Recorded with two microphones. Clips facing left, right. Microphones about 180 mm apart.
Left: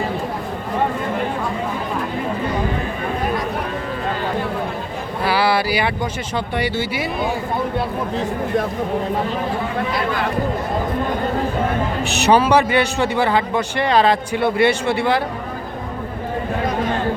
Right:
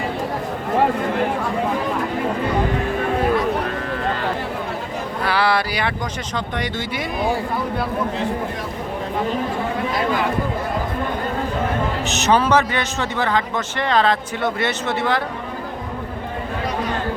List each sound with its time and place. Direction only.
5.2 s a sound: 5° left (ahead or behind)
6.3 s speech: 5° left (ahead or behind)
12.0 s speech: 15° left (ahead or behind)